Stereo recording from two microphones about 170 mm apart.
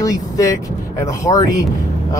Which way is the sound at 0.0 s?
20° left (ahead or behind).